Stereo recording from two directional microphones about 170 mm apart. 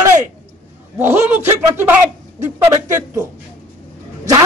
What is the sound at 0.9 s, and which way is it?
A man's voice, 15° right (ahead or behind).